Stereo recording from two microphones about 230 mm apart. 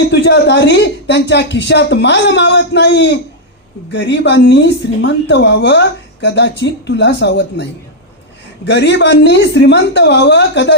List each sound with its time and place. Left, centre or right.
0.1 s a woman's voice: left